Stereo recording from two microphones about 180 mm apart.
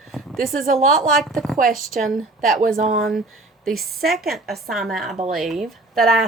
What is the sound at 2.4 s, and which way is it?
Speech, 50° right (ahead or behind).